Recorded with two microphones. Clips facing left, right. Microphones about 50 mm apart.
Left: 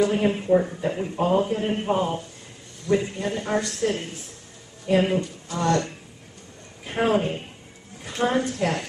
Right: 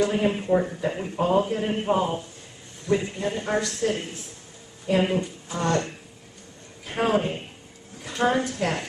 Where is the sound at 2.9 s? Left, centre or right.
Right.